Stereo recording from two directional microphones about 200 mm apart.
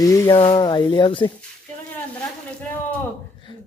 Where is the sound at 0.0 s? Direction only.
15° left (ahead or behind).